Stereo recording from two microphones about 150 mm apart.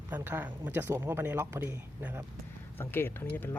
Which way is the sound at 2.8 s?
15° left (ahead or behind).